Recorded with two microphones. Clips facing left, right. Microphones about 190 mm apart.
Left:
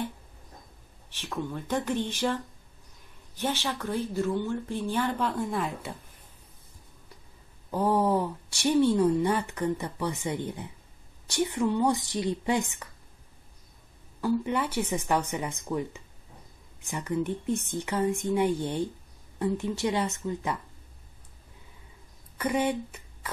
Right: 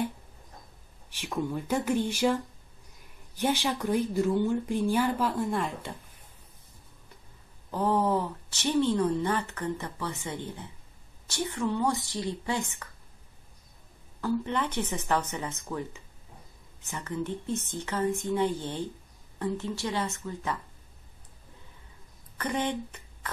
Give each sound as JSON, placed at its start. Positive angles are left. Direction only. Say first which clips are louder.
{"t": 1.1, "sound": "speech", "louder": "right 2 dB", "side_deg": -10}
{"t": 7.7, "sound": "speech", "louder": "left 1 dB", "side_deg": 10}
{"t": 14.2, "sound": "speech", "louder": "left 2 dB", "side_deg": 10}
{"t": 16.8, "sound": "speech", "louder": "left 4 dB", "side_deg": 15}
{"t": 22.4, "sound": "speech", "louder": "left 3 dB", "side_deg": 10}